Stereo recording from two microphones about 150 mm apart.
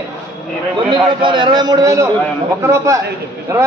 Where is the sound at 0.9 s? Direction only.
30° right (ahead or behind).